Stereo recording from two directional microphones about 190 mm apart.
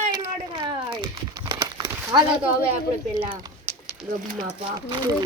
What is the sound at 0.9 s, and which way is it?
Crumpling, 25° right (ahead or behind).